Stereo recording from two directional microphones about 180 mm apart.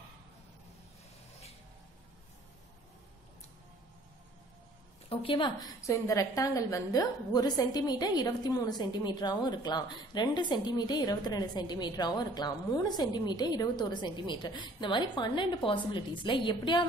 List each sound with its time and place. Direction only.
5.1 s a woman's voice: 30° left (ahead or behind)